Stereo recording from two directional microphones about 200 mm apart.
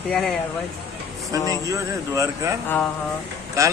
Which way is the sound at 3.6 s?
15° right (ahead or behind).